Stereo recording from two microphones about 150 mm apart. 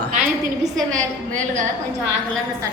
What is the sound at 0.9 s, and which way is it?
Speech, 55° right (ahead or behind).